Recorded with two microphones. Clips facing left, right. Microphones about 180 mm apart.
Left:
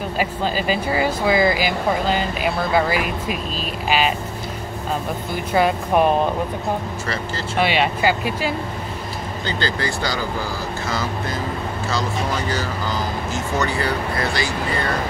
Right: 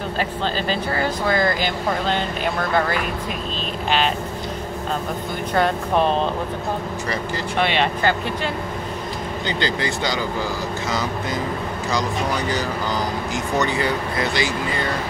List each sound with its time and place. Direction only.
0.2 s speech: 10° left (ahead or behind)
5.5 s speech: 10° left (ahead or behind)
7.5 s speech: 5° left (ahead or behind)
9.5 s speech: 20° right (ahead or behind)
11.9 s speech: 20° right (ahead or behind)